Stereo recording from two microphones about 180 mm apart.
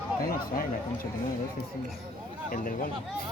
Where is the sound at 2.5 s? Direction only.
50° left (ahead or behind).